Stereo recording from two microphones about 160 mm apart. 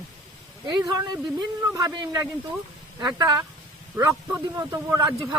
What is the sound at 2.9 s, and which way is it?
Speech, 25° right (ahead or behind).